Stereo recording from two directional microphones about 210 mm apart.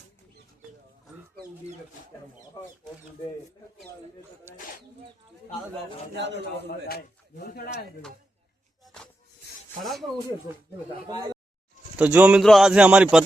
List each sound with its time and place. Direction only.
6.1 s a man's voice: 55° right (ahead or behind)
6.7 s speech: 50° left (ahead or behind)
8.8 s music: 5° left (ahead or behind)
9.8 s a man's voice: centre (ahead or behind)
10.5 s speech: 15° right (ahead or behind)
11.9 s a man's voice: 5° right (ahead or behind)